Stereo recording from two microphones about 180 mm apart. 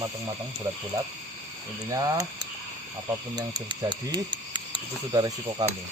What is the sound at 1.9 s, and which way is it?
Speech, 20° right (ahead or behind).